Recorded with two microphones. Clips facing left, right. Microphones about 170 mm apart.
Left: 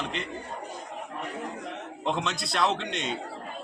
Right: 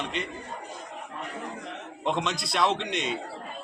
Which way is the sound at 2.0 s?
Centre (ahead or behind).